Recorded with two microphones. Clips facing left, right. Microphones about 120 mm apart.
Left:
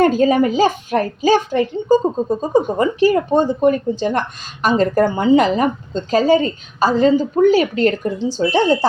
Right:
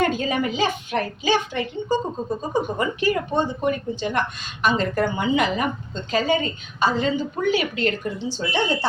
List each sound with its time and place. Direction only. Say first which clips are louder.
0.0 s a woman's voice: left 9 dB; 40° left (ahead or behind)